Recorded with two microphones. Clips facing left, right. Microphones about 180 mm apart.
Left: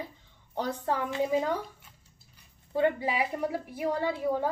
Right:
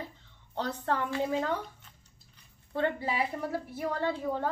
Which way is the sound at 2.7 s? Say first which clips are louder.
Left 4 dB; 15° left (ahead or behind).